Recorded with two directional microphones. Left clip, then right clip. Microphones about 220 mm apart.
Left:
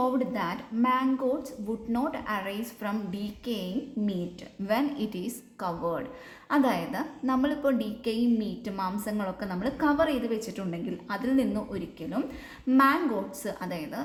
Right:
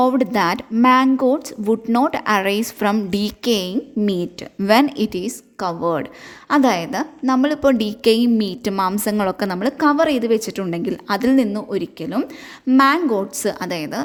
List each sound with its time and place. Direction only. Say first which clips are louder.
0.0 s a woman's voice: right 11 dB; 50° right (ahead or behind)